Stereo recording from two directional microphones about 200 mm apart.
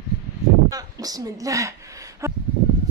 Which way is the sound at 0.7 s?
20° right (ahead or behind).